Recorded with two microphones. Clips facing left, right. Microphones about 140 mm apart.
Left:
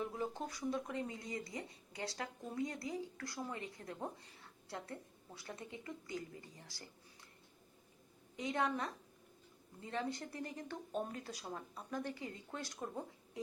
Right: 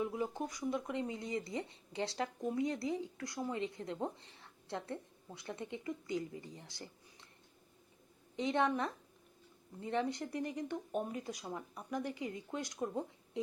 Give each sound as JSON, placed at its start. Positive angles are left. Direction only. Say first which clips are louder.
{"t": 0.0, "sound": "speech", "louder": "right 4 dB", "side_deg": -15}
{"t": 8.4, "sound": "speech", "louder": "right 4 dB", "side_deg": -25}